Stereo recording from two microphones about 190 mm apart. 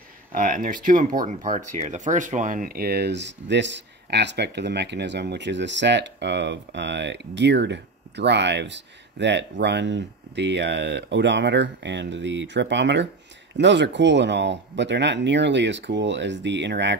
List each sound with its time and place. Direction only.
0.3 s speech: 45° right (ahead or behind); by 16.9 s 65° right (ahead or behind)